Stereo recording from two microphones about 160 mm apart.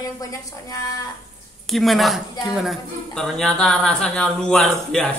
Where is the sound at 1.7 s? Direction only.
Centre (ahead or behind).